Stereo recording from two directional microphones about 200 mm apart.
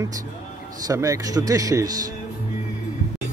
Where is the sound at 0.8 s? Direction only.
15° right (ahead or behind).